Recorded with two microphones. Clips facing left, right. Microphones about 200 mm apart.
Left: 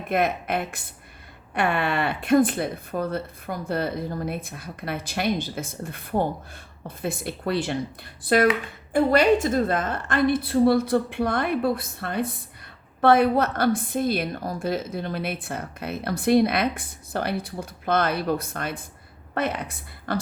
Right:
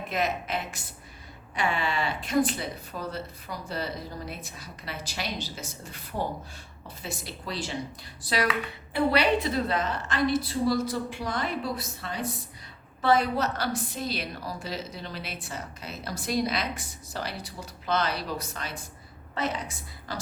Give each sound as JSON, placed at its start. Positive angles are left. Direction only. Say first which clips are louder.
{"t": 0.1, "sound": "a woman's voice", "louder": "left 6 dB", "side_deg": 55}